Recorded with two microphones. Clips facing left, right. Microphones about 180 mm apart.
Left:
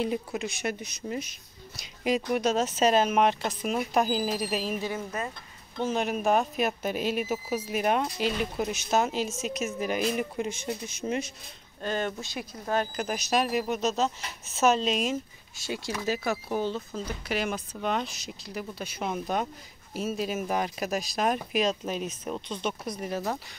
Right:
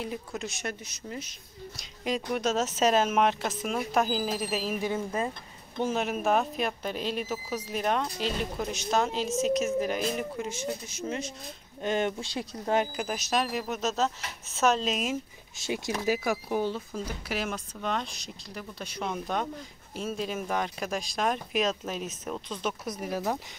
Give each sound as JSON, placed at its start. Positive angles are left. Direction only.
{"t": 0.3, "sound": "speech", "side_deg": 0}
{"t": 0.7, "sound": "speech", "side_deg": 15}
{"t": 2.0, "sound": "speech", "side_deg": 5}
{"t": 4.8, "sound": "speech", "side_deg": -25}
{"t": 5.8, "sound": "speech", "side_deg": -5}
{"t": 10.5, "sound": "speech", "side_deg": 55}
{"t": 11.0, "sound": "speech", "side_deg": 15}
{"t": 11.8, "sound": "speech", "side_deg": -20}
{"t": 12.8, "sound": "speech", "side_deg": -5}
{"t": 15.5, "sound": "speech", "side_deg": -20}